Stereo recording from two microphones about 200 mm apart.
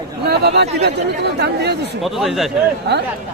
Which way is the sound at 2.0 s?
Centre (ahead or behind).